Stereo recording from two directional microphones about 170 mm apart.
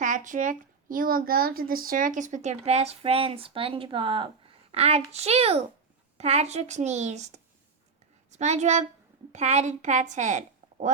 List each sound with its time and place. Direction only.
0.0 s a woman's voice: 50° right (ahead or behind)